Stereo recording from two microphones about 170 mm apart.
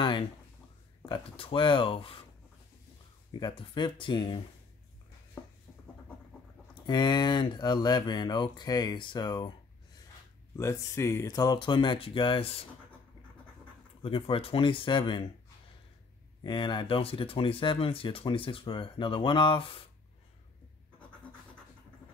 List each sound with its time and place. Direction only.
1.0 s speech: 30° left (ahead or behind)
3.3 s speech: 25° left (ahead or behind)
6.7 s speech: 25° left (ahead or behind)
10.5 s speech: 15° left (ahead or behind); by 12.6 s 30° left (ahead or behind)
14.0 s speech: 30° left (ahead or behind)
16.4 s speech: 25° left (ahead or behind)